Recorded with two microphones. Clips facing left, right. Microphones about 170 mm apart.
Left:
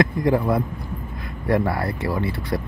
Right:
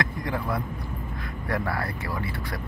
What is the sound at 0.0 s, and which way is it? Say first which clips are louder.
Speech: left 10 dB; 25° left (ahead or behind).